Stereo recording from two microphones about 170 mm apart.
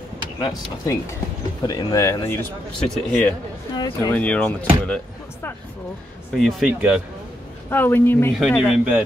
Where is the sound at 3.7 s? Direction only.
25° left (ahead or behind).